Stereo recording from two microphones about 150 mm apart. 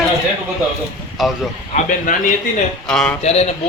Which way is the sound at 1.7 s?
60° left (ahead or behind).